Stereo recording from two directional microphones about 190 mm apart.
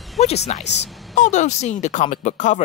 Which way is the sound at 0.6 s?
65° left (ahead or behind).